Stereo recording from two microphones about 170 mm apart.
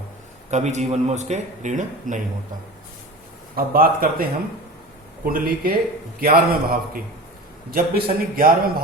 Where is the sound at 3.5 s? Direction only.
60° right (ahead or behind).